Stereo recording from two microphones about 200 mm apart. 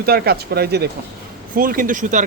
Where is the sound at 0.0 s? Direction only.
50° right (ahead or behind).